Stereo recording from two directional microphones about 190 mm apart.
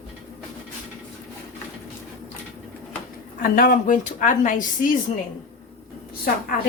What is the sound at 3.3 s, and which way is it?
A woman's voice, 50° left (ahead or behind).